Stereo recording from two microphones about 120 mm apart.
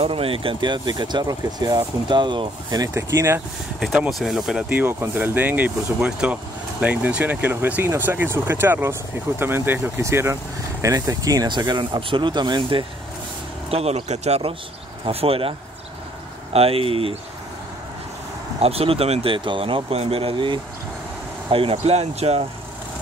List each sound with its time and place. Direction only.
0.0 s speech: 50° right (ahead or behind)
2.9 s speech: 20° right (ahead or behind)
4.1 s speech: centre (ahead or behind)
4.6 s speech: 15° right (ahead or behind); by 12.8 s 40° right (ahead or behind)
13.7 s speech: 55° right (ahead or behind)
16.5 s speech: 55° right (ahead or behind)
18.6 s speech: 55° right (ahead or behind)